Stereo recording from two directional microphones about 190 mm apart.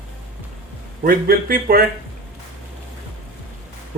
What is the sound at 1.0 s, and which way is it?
Speech, 50° right (ahead or behind).